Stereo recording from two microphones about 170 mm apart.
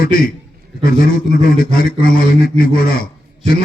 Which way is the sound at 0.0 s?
55° left (ahead or behind).